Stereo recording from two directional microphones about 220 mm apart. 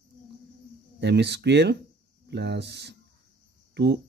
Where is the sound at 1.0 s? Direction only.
50° right (ahead or behind).